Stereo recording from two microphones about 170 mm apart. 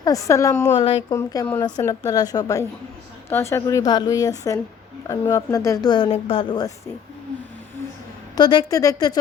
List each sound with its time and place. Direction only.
0.0 s a woman's voice: 20° left (ahead or behind)
8.4 s a woman's voice: 25° left (ahead or behind)